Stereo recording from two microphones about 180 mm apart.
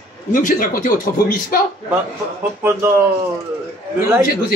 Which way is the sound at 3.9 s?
15° right (ahead or behind).